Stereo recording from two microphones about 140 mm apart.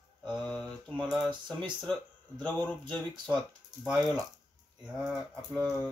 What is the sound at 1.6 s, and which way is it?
Speech, 5° left (ahead or behind).